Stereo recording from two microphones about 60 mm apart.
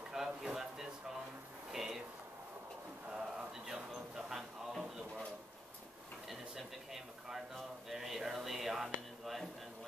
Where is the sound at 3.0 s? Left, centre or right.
Centre.